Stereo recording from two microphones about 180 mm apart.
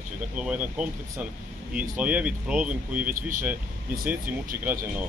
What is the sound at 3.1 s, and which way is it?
Speech, 50° right (ahead or behind).